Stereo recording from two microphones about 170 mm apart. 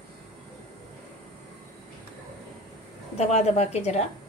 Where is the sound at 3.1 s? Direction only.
40° left (ahead or behind).